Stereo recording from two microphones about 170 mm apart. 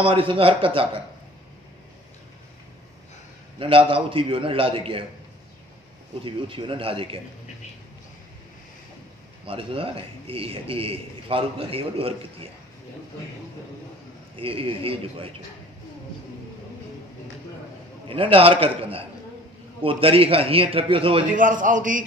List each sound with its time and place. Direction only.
0.0 s a man's voice: 30° right (ahead or behind)
3.5 s a man's voice: 30° right (ahead or behind)
6.2 s a man's voice: 30° right (ahead or behind)
9.5 s a man's voice: 30° right (ahead or behind)
14.3 s a man's voice: 30° right (ahead or behind)
18.0 s a man's voice: 30° right (ahead or behind)
21.3 s a man's voice: 50° right (ahead or behind)